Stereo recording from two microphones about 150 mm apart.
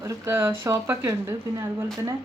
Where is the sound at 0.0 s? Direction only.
20° right (ahead or behind).